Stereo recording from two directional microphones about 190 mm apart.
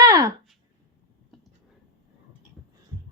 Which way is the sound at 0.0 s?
15° right (ahead or behind).